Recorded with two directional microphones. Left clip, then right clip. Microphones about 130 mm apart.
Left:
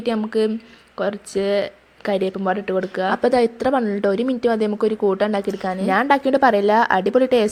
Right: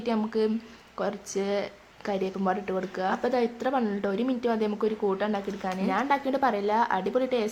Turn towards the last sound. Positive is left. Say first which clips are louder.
# left 10 dB
turn(degrees=50)  # may be behind; listen again after turning